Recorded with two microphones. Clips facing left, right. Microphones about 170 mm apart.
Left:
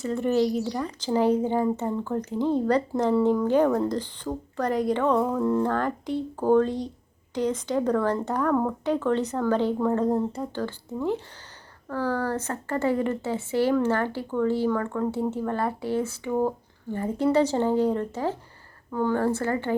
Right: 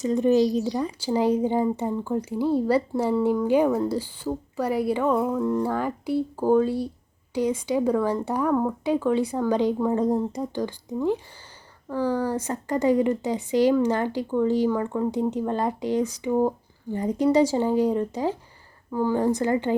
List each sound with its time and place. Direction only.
0.0 s a woman's voice: 15° right (ahead or behind)